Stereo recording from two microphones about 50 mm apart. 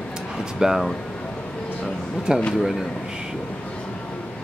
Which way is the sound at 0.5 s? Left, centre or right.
Centre.